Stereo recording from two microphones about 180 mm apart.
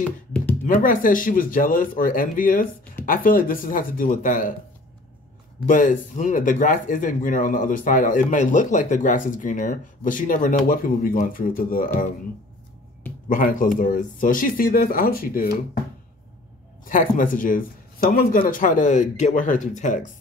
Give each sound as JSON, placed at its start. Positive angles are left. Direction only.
{"t": 0.7, "sound": "speech", "side_deg": 50}
{"t": 5.7, "sound": "speech", "side_deg": 45}
{"t": 13.3, "sound": "speech", "side_deg": 50}
{"t": 16.9, "sound": "speech", "side_deg": 50}